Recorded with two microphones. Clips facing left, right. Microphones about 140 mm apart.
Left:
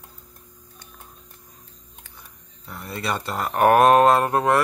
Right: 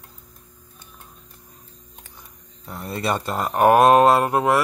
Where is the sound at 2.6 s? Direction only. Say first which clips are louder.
Right 4 dB; 25° right (ahead or behind).